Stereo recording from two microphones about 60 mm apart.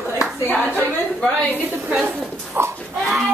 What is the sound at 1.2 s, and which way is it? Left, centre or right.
Speech, left.